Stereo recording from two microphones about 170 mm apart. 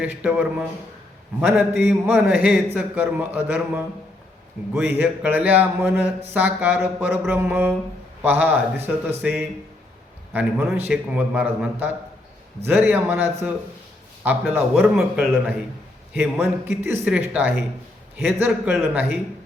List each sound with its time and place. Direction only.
0.0 s speech: 5° right (ahead or behind)